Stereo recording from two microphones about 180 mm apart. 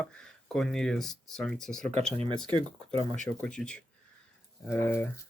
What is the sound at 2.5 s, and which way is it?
Speech, 30° right (ahead or behind).